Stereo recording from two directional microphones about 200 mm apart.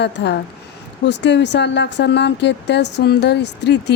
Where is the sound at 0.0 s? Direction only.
60° left (ahead or behind).